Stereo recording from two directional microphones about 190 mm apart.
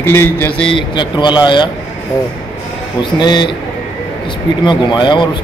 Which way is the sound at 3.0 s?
25° left (ahead or behind).